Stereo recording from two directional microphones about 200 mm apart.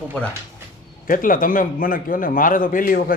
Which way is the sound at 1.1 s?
45° left (ahead or behind).